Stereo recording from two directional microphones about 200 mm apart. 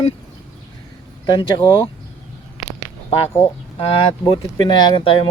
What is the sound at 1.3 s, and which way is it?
Speech, 20° left (ahead or behind).